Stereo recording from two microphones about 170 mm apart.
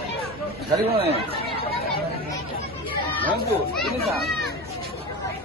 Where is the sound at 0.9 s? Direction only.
35° right (ahead or behind).